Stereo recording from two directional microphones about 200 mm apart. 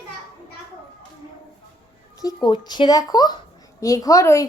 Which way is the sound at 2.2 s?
20° left (ahead or behind).